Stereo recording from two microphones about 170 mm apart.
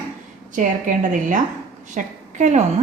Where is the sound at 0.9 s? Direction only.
50° right (ahead or behind).